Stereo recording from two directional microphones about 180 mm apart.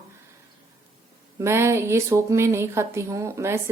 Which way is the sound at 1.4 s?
15° right (ahead or behind).